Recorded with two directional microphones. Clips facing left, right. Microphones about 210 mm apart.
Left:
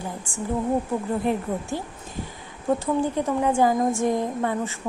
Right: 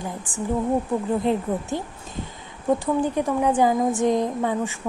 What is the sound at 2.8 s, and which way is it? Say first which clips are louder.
Speech: right 1 dB; 15° right (ahead or behind).